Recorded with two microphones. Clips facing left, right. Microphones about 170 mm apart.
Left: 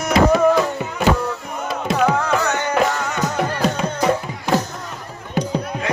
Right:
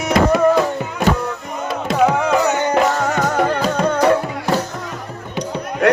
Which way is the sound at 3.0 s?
50° right (ahead or behind).